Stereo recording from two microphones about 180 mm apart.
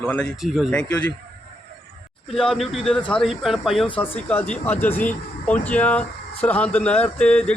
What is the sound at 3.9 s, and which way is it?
Speech, 10° left (ahead or behind).